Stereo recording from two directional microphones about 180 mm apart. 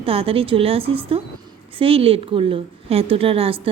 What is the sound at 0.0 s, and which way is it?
A woman's voice, 30° right (ahead or behind).